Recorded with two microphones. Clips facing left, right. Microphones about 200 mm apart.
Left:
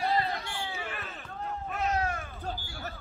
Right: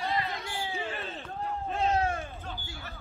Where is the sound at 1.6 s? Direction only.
30° right (ahead or behind).